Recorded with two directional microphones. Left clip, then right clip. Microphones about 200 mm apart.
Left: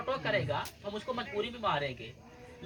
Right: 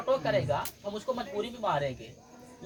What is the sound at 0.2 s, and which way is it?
Speech, 20° right (ahead or behind).